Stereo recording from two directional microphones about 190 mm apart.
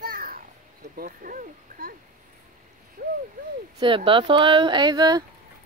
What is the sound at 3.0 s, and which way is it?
Speech, 50° right (ahead or behind).